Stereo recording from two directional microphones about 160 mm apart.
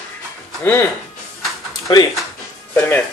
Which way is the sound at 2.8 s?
10° left (ahead or behind).